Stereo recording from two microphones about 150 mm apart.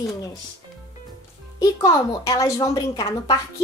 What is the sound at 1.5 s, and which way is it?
Speech, 20° left (ahead or behind).